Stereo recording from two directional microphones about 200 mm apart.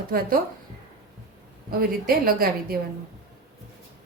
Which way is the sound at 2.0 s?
50° right (ahead or behind).